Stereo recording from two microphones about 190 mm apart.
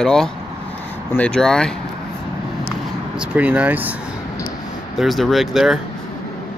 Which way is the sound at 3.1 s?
5° right (ahead or behind).